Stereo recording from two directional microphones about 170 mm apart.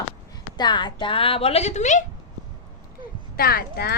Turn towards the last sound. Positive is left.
turn(degrees=65)  # may be behind; listen again after turning